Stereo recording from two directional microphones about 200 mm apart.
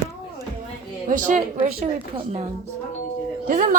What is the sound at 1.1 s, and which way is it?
A woman's voice, 40° right (ahead or behind).